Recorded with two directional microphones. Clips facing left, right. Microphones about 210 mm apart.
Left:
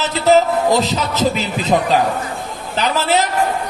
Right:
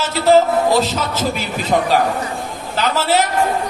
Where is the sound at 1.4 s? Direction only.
20° left (ahead or behind).